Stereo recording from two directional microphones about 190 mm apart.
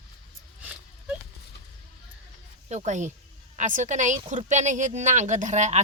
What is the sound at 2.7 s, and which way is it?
Speech, 35° right (ahead or behind).